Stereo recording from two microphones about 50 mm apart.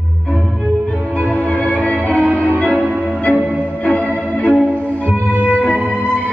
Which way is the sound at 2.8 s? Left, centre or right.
Right.